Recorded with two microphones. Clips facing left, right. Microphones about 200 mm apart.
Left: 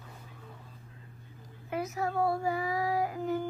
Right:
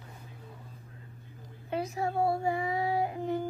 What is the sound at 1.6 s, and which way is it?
Child singing, 30° right (ahead or behind).